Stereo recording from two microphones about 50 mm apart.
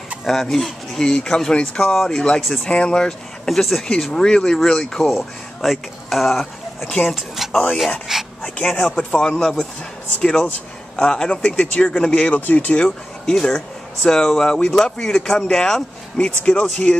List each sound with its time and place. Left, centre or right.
0.3 s speech: centre
2.7 s speech: centre
3.4 s speech: centre
5.1 s speech: centre
8.1 s a sound: centre
8.5 s speech: centre
12.4 s speech: left
13.3 s speech: centre